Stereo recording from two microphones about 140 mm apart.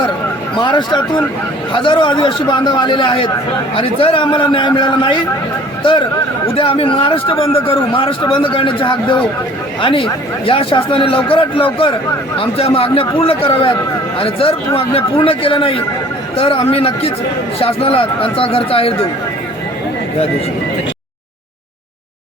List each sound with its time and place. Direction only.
0.6 s a man's voice: 30° left (ahead or behind)